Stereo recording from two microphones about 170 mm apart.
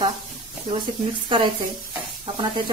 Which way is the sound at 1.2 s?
30° right (ahead or behind).